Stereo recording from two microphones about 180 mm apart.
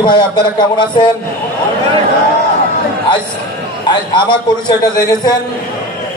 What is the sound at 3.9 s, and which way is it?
A man's voice, 25° left (ahead or behind).